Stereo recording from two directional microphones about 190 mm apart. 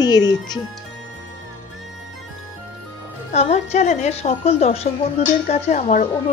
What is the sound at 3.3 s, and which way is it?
A woman's voice, 35° left (ahead or behind).